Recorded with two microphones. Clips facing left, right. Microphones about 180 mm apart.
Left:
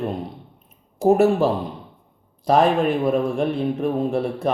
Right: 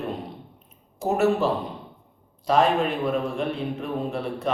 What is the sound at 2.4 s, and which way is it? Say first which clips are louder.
A man's voice: left 4 dB; 50° left (ahead or behind).